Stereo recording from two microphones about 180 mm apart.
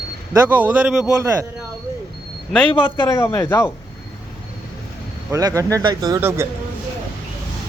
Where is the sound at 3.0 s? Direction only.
15° left (ahead or behind).